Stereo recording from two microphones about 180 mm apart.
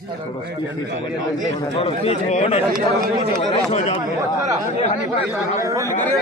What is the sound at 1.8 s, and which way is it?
Speech, 35° left (ahead or behind).